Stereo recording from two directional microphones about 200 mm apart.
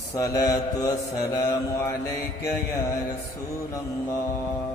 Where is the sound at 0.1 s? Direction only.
15° left (ahead or behind).